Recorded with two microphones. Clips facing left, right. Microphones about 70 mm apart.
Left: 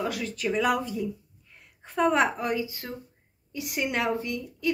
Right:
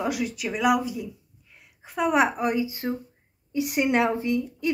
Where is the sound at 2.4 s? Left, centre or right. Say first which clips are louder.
Right 4 dB; right.